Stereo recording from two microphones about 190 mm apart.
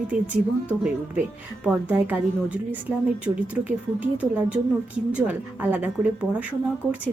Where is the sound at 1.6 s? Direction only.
10° right (ahead or behind).